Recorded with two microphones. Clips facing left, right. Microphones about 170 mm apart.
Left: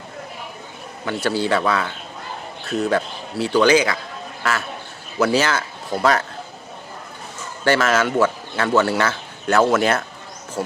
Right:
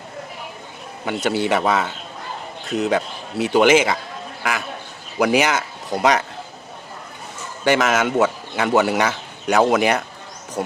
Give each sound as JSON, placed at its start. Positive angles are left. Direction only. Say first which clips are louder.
{"t": 1.0, "sound": "speech", "louder": "right 1 dB", "side_deg": -20}
{"t": 7.6, "sound": "speech", "louder": "even", "side_deg": -20}